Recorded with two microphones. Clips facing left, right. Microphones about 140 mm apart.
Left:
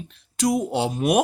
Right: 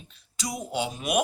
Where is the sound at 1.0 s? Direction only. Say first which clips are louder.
Left 7 dB; 35° left (ahead or behind).